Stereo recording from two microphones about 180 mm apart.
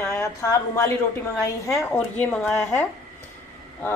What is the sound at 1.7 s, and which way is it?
A woman's voice, 5° left (ahead or behind).